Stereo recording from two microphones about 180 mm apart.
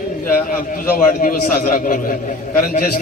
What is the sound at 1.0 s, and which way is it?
A man's voice, 50° left (ahead or behind).